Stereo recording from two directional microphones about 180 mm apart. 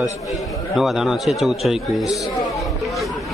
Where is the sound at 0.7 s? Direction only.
Centre (ahead or behind).